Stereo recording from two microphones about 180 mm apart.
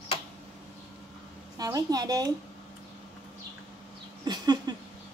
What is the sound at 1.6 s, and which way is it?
Speech, 20° right (ahead or behind).